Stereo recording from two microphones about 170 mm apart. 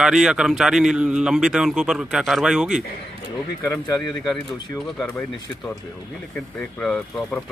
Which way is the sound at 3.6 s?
20° left (ahead or behind).